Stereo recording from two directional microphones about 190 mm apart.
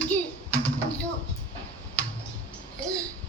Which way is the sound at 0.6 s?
5° left (ahead or behind).